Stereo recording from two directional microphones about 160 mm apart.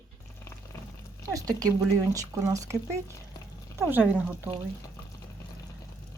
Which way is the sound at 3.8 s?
15° right (ahead or behind).